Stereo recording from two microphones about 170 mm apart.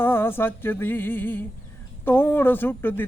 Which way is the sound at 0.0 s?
15° left (ahead or behind).